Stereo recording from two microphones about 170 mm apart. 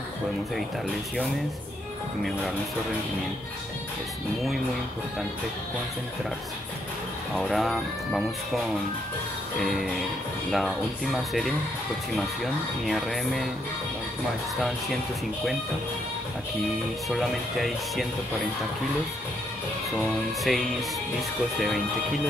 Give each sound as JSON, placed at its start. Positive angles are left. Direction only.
{"t": 7.3, "sound": "speech", "side_deg": 0}
{"t": 12.8, "sound": "speech", "side_deg": 0}
{"t": 17.1, "sound": "speech", "side_deg": 0}
{"t": 20.0, "sound": "speech", "side_deg": 0}